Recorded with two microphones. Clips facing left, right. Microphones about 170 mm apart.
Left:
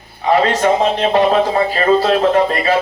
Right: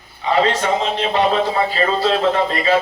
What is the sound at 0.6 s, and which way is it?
Speech, 45° left (ahead or behind).